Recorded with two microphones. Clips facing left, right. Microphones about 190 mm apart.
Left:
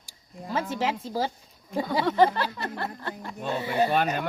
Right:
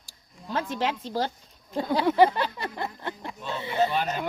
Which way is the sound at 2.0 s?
10° right (ahead or behind).